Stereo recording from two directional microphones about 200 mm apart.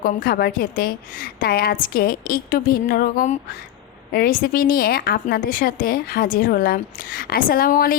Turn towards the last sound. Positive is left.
turn(degrees=45)  # may be behind; listen again after turning